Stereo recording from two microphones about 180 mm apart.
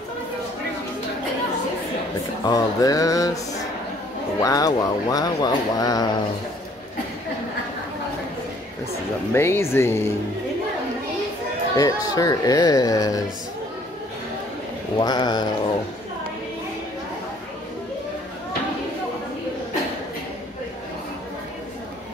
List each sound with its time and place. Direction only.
2.4 s speech: 20° left (ahead or behind)
4.4 s speech: 20° left (ahead or behind)
9.3 s speech: 15° left (ahead or behind)
11.7 s speech: 20° left (ahead or behind)
15.0 s speech: 25° left (ahead or behind)